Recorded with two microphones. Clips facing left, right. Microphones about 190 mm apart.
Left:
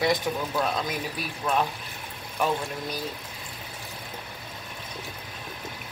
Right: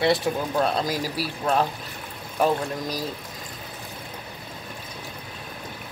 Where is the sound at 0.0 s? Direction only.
30° right (ahead or behind).